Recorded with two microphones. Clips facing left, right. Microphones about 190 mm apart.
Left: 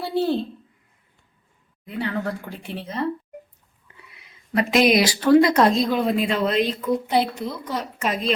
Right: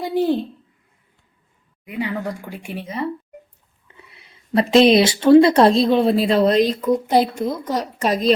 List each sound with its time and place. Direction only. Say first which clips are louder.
0.0 s speech: right 3 dB; 15° right (ahead or behind)
1.8 s speech: right 1 dB; 15° right (ahead or behind)
3.8 s speech: right 3 dB; 25° right (ahead or behind)